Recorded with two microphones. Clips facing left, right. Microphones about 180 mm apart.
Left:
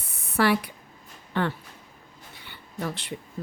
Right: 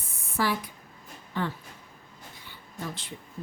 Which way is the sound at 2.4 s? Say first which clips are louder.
Left 6 dB; 70° left (ahead or behind).